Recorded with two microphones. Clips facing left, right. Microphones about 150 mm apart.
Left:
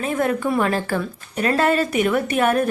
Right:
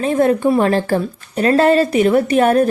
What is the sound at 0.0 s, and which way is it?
A woman's voice, 30° right (ahead or behind).